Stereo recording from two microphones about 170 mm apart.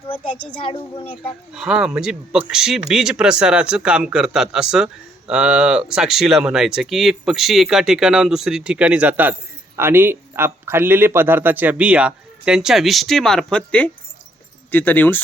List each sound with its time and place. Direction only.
0.4 s a child's voice: 30° left (ahead or behind)
1.5 s speech: 5° right (ahead or behind)